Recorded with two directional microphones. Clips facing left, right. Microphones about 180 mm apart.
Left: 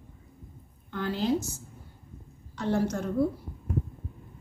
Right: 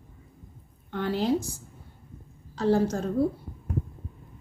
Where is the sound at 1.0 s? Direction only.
30° right (ahead or behind).